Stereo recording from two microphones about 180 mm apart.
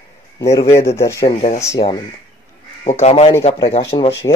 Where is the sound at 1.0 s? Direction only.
15° left (ahead or behind).